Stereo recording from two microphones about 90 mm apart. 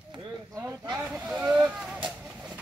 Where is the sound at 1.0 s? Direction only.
10° right (ahead or behind).